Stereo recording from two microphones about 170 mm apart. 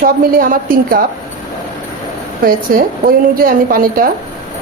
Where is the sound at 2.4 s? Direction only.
55° right (ahead or behind).